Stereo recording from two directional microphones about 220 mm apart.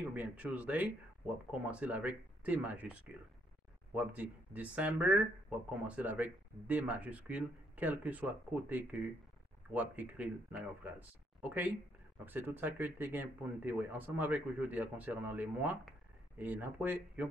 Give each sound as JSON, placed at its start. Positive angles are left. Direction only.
{"t": 0.1, "sound": "speech", "side_deg": -5}